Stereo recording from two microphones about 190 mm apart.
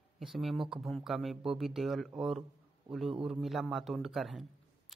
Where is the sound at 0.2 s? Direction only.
Centre (ahead or behind).